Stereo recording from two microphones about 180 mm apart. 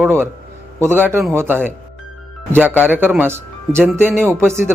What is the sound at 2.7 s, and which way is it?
Speech, 10° right (ahead or behind).